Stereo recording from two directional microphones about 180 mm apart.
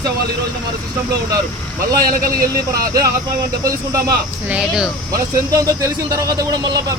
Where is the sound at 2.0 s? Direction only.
55° right (ahead or behind).